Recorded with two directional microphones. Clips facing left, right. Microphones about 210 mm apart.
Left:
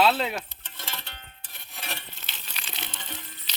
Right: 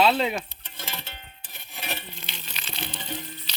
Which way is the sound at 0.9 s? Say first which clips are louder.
Right 2 dB; 5° right (ahead or behind).